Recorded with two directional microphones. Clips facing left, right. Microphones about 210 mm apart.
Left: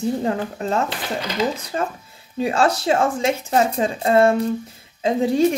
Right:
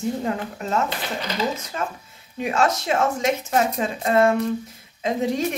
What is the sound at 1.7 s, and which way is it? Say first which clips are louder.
Speech: left 4 dB; 40° left (ahead or behind).